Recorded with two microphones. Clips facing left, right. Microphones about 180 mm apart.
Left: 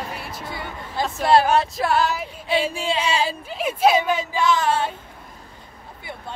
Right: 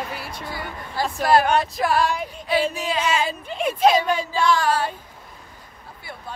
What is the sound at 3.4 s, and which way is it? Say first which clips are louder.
Speech: right 1 dB; 5° left (ahead or behind).